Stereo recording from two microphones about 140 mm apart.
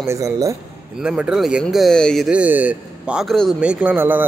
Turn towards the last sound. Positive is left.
turn(degrees=-15)  # may be behind; listen again after turning